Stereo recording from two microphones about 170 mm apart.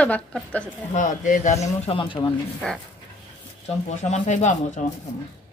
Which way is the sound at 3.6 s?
45° left (ahead or behind).